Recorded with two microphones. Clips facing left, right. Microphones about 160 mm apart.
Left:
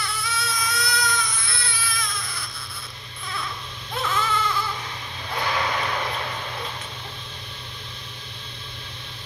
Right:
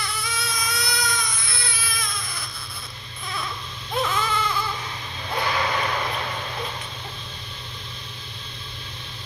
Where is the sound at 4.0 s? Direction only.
15° right (ahead or behind).